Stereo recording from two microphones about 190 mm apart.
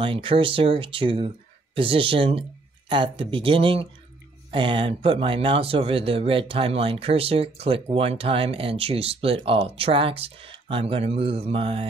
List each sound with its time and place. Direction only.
0.0 s speech: 25° right (ahead or behind)